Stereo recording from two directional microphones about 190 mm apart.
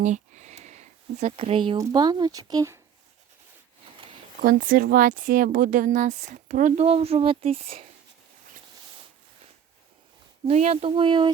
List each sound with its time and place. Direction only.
0.0 s speech: 40° right (ahead or behind); by 2.8 s 15° right (ahead or behind)
4.4 s speech: 45° right (ahead or behind); by 7.9 s 30° right (ahead or behind)
10.4 s speech: 35° right (ahead or behind)